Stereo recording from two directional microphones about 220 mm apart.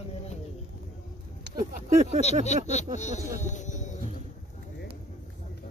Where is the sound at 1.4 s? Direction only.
40° right (ahead or behind).